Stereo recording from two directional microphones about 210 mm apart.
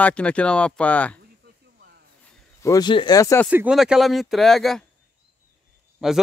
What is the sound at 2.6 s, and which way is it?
Speech, 20° left (ahead or behind).